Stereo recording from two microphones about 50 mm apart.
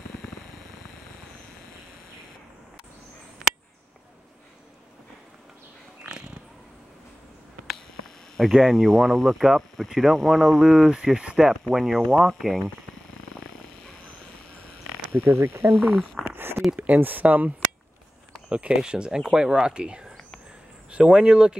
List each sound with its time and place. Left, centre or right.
8.4 s speech: centre
15.2 s speech: right
15.8 s speech: right
16.3 s a sound: right
16.7 s speech: right
18.7 s speech: centre